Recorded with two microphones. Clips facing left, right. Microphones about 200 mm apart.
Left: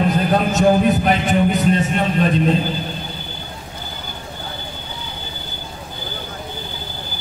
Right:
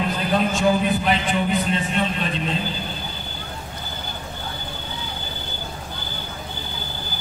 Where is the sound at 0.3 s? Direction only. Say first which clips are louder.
Left 2 dB; 45° left (ahead or behind).